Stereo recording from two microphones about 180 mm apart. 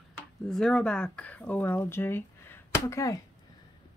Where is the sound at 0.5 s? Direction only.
5° left (ahead or behind).